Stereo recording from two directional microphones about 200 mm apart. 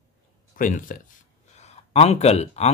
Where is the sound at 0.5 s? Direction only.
40° left (ahead or behind).